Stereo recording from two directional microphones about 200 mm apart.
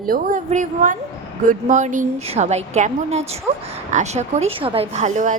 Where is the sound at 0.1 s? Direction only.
40° right (ahead or behind).